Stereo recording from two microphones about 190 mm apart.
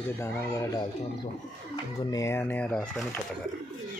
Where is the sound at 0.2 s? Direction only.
15° left (ahead or behind).